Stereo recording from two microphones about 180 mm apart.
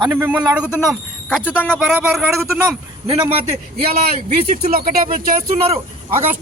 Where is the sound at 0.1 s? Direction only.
10° right (ahead or behind).